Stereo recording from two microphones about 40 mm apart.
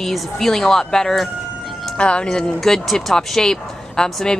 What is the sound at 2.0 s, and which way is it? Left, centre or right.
Speech, left.